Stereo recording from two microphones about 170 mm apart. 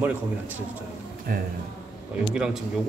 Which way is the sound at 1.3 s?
55° right (ahead or behind).